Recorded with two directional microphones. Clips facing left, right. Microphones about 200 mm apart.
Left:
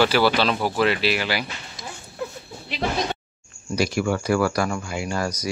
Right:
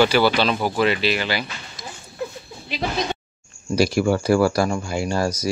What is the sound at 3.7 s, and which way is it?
Speech, 35° right (ahead or behind).